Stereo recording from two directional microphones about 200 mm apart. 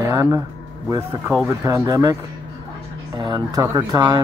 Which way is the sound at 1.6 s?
15° right (ahead or behind).